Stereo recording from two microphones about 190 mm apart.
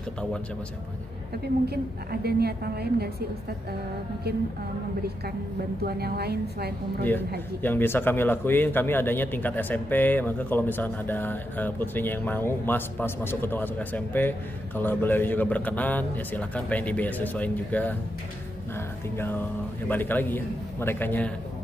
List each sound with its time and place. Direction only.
2.2 s a woman's voice: 55° right (ahead or behind)
5.9 s a woman's voice: 55° right (ahead or behind)
7.6 s a man's voice: 10° left (ahead or behind)
19.1 s a man's voice: 10° left (ahead or behind)